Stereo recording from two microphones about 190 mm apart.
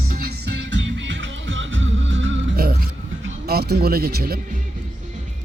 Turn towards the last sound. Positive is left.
turn(degrees=-55)  # may be behind; listen again after turning